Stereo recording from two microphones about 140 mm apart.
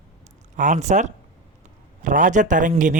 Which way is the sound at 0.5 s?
60° right (ahead or behind).